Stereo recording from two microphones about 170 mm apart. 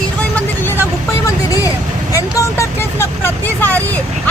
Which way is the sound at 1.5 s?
20° left (ahead or behind).